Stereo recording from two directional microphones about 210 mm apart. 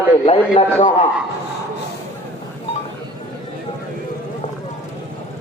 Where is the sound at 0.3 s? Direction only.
30° left (ahead or behind).